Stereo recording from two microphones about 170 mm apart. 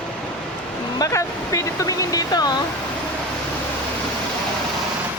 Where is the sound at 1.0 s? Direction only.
20° left (ahead or behind).